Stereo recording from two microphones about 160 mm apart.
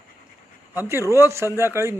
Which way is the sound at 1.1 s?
15° right (ahead or behind).